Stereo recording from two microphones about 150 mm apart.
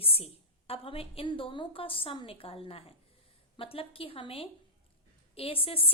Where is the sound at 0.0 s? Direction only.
40° left (ahead or behind).